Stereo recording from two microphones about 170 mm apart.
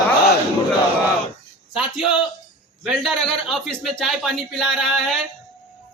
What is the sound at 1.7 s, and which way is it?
A man's voice, 5° right (ahead or behind).